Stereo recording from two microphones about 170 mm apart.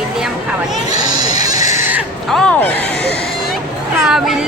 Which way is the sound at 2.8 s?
75° left (ahead or behind).